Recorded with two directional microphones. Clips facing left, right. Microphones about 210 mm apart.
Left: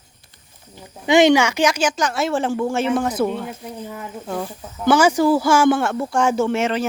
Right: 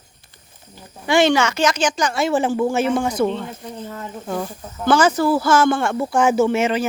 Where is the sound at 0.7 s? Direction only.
20° left (ahead or behind); by 6.9 s centre (ahead or behind).